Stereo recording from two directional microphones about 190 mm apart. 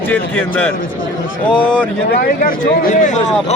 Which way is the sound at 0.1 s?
10° left (ahead or behind).